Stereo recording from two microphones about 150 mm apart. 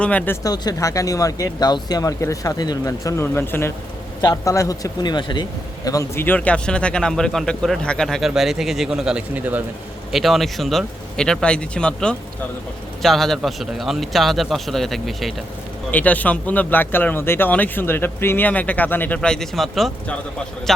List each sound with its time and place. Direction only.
0.0 s speech: 10° left (ahead or behind)
0.4 s a man's voice: 25° left (ahead or behind); by 9.6 s 10° right (ahead or behind)
10.1 s a man's voice: centre (ahead or behind)
15.9 s a man's voice: 10° left (ahead or behind)